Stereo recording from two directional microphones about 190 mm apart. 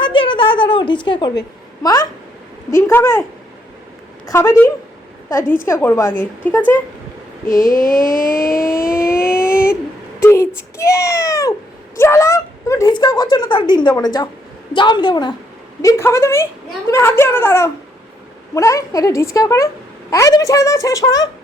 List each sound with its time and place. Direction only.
0.0 s a woman's voice: 25° left (ahead or behind)
4.3 s a child's voice: 15° left (ahead or behind)
7.4 s vehicle: 45° left (ahead or behind)
9.0 s a sound: 50° left (ahead or behind)
10.2 s a sound: 15° left (ahead or behind)
10.8 s a child's voice: 15° left (ahead or behind)